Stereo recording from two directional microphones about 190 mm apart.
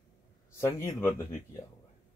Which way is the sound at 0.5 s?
15° left (ahead or behind).